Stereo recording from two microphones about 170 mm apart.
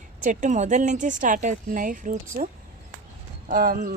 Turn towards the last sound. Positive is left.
turn(degrees=-60)  # may be behind; listen again after turning